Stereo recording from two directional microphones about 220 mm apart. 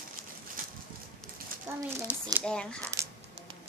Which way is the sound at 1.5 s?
40° right (ahead or behind).